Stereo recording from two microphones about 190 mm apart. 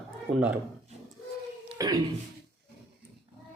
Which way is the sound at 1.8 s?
20° right (ahead or behind).